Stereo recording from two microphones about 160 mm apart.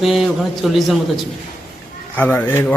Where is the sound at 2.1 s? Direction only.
10° left (ahead or behind).